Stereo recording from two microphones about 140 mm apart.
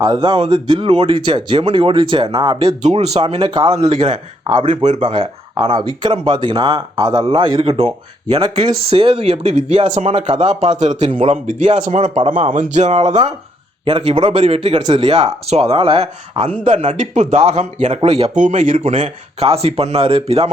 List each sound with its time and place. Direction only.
0.0 s speech: 30° right (ahead or behind)
3.8 s speech: 50° right (ahead or behind)
5.0 s speech: 35° right (ahead or behind)
11.4 s speech: 60° right (ahead or behind)
12.7 s speech: 55° right (ahead or behind)
13.8 s speech: 35° right (ahead or behind)
14.8 s speech: 30° right (ahead or behind)
15.4 s speech: 50° right (ahead or behind)
16.7 s speech: 55° right (ahead or behind)